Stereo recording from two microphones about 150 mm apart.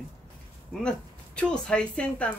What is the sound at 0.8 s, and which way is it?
Speech, 5° left (ahead or behind).